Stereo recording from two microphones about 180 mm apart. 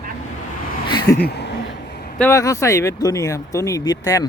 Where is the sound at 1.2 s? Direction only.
70° left (ahead or behind).